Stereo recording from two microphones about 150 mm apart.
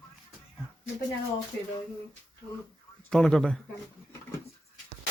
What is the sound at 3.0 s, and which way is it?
Speech, 5° left (ahead or behind).